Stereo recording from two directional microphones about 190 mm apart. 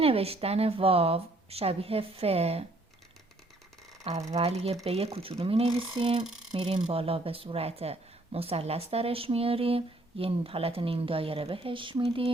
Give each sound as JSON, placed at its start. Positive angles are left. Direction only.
{"t": 0.0, "sound": "speech", "side_deg": -30}
{"t": 4.0, "sound": "speech", "side_deg": -35}